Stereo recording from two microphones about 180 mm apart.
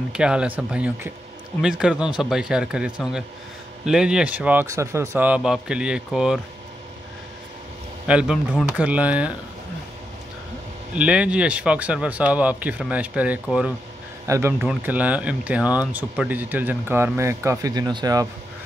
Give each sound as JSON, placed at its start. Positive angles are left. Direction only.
{"t": 0.1, "sound": "speech", "side_deg": -5}
{"t": 8.1, "sound": "speech", "side_deg": -5}
{"t": 11.0, "sound": "speech", "side_deg": -5}